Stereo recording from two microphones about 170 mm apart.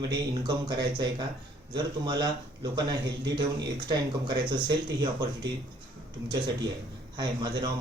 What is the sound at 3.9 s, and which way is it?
A man's voice, 25° right (ahead or behind).